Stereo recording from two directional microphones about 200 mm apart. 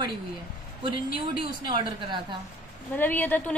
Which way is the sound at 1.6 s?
25° right (ahead or behind).